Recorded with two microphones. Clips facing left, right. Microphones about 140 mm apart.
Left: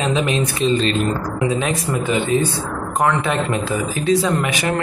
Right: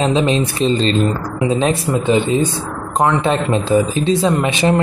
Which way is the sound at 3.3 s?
25° right (ahead or behind).